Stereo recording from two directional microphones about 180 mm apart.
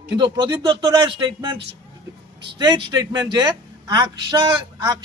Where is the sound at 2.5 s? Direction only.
25° right (ahead or behind).